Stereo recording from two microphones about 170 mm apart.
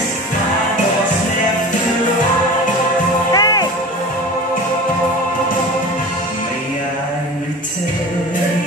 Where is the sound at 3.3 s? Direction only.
20° left (ahead or behind).